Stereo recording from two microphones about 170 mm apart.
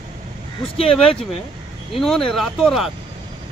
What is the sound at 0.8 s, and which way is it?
Speech, 35° left (ahead or behind).